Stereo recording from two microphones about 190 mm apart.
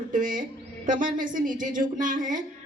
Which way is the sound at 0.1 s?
45° right (ahead or behind).